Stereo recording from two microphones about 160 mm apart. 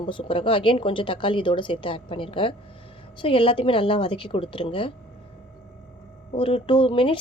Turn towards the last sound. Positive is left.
turn(degrees=35)  # may be behind; listen again after turning